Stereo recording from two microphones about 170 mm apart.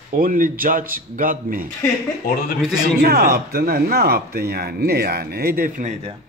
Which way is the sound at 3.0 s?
65° right (ahead or behind).